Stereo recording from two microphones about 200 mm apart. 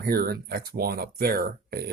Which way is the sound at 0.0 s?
50° right (ahead or behind).